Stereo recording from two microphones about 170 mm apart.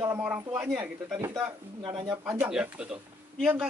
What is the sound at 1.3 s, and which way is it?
Speech, 25° right (ahead or behind).